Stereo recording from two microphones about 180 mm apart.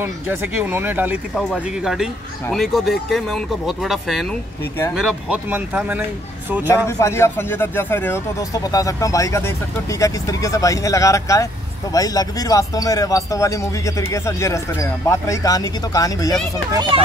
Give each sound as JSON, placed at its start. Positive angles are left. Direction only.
{"t": 0.0, "sound": "speech", "side_deg": -10}
{"t": 6.9, "sound": "a man's voice", "side_deg": 15}
{"t": 16.9, "sound": "speech", "side_deg": -30}